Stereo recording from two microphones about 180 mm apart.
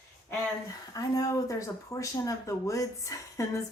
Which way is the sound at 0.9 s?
20° left (ahead or behind).